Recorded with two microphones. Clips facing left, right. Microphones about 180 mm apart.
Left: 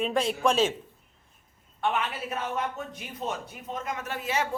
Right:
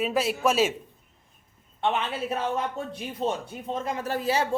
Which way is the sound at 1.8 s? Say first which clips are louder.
Right 2 dB; 25° right (ahead or behind).